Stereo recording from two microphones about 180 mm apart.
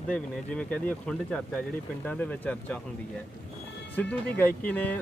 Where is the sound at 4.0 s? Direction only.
10° left (ahead or behind).